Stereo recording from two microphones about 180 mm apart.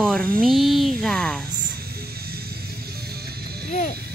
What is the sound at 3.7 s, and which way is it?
Speech, 45° left (ahead or behind).